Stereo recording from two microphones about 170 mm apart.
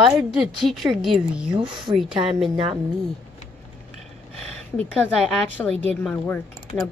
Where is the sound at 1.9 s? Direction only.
30° right (ahead or behind).